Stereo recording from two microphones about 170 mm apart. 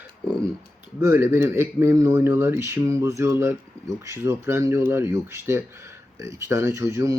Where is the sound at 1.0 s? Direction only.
15° right (ahead or behind).